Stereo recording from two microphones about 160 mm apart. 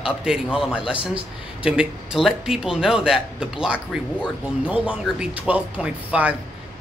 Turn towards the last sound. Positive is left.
turn(degrees=-10)  # may be behind; listen again after turning